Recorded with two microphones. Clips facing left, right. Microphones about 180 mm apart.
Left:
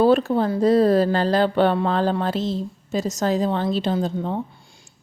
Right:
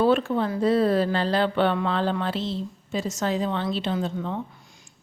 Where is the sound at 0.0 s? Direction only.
40° left (ahead or behind).